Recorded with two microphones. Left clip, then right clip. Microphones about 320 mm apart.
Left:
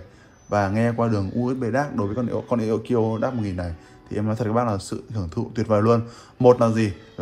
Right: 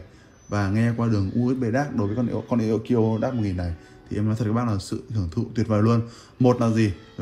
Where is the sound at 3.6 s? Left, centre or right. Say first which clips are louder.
Left 2 dB; centre.